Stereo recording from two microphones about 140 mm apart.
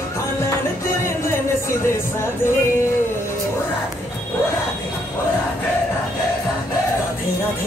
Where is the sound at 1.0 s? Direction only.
20° left (ahead or behind).